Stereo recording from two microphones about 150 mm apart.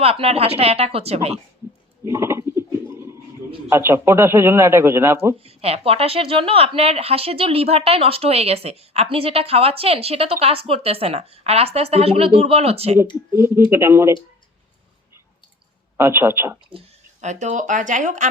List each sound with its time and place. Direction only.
0.0 s speech: 40° right (ahead or behind)
2.0 s a sound: 15° right (ahead or behind)
3.7 s a man's voice: 15° right (ahead or behind)
5.5 s speech: 40° right (ahead or behind)
13.7 s a man's voice: 15° right (ahead or behind)
16.0 s a man's voice: 15° right (ahead or behind)
17.2 s speech: 55° right (ahead or behind)